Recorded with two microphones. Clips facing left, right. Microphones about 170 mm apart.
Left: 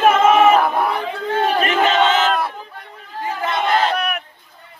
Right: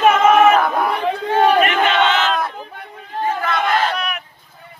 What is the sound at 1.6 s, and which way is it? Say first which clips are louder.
Battle cry: even; 35° left (ahead or behind).